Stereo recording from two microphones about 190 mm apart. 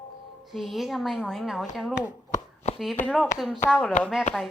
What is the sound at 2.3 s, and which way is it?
Chopping, 35° left (ahead or behind).